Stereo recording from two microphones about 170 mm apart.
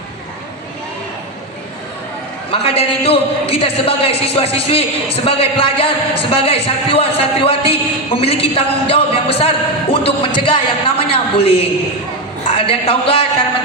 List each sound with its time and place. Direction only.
2.5 s a man's voice: 35° left (ahead or behind)